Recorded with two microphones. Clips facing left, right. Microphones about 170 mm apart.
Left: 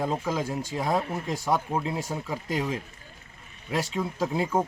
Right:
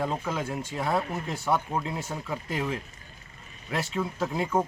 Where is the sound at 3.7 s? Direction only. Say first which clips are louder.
Left 1 dB; 15° left (ahead or behind).